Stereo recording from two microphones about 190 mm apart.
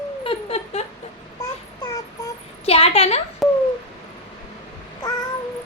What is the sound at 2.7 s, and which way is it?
Speech, 30° left (ahead or behind).